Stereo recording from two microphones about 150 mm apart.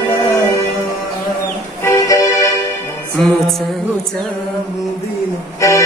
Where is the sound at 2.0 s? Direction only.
20° left (ahead or behind).